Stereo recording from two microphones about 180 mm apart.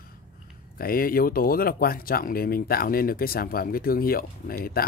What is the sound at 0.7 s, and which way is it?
Speech, 55° left (ahead or behind).